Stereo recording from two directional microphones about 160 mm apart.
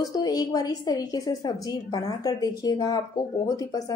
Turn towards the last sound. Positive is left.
turn(degrees=20)  # may be behind; listen again after turning